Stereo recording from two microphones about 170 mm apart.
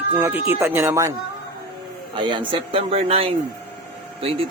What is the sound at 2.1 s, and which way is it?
A man's voice, 30° right (ahead or behind).